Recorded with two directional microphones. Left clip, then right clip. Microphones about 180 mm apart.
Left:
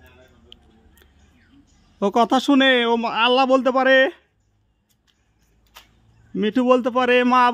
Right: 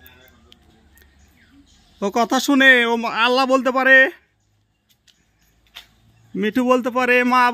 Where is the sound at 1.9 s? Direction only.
10° left (ahead or behind).